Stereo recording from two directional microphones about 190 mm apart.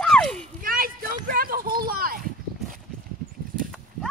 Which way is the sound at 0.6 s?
50° right (ahead or behind).